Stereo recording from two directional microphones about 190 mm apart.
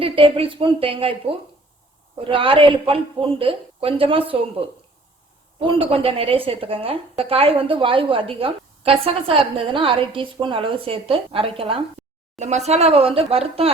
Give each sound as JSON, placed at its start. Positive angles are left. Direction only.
{"t": 0.0, "sound": "a woman's voice", "side_deg": -30}
{"t": 5.5, "sound": "a woman's voice", "side_deg": -30}